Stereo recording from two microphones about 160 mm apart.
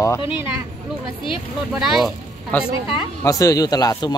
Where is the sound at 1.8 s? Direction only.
Centre (ahead or behind).